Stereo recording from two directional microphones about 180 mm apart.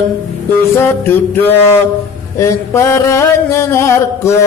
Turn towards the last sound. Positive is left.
turn(degrees=15)  # may be behind; listen again after turning